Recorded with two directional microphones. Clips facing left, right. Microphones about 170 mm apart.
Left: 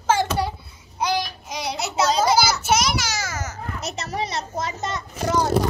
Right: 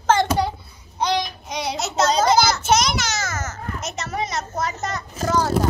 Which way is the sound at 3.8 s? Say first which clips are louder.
Even; 35° left (ahead or behind).